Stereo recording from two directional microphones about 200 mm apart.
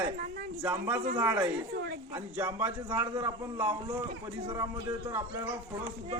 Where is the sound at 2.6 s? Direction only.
10° right (ahead or behind).